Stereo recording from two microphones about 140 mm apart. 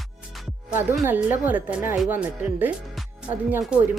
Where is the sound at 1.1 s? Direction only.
10° right (ahead or behind).